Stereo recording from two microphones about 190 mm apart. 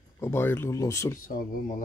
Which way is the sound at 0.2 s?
10° left (ahead or behind).